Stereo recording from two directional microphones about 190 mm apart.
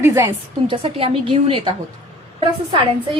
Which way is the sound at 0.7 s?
30° right (ahead or behind).